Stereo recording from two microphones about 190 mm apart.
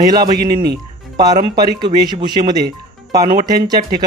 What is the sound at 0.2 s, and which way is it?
Speech, 55° right (ahead or behind).